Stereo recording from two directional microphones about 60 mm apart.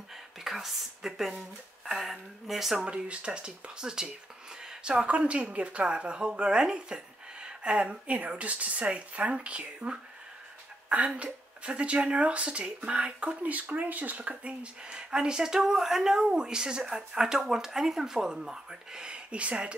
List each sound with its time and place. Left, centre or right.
0.4 s a woman's voice: centre
2.8 s speech: centre
4.6 s a sound: centre
5.0 s speech: right